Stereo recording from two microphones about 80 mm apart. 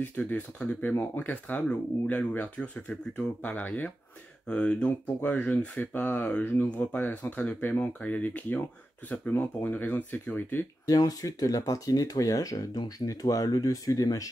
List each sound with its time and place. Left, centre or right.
0.2 s speech: centre
10.9 s speech: left